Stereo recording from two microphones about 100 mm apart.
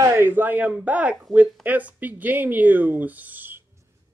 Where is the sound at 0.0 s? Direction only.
25° right (ahead or behind).